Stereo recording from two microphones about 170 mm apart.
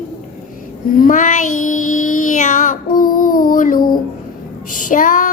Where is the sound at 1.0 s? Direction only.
50° left (ahead or behind).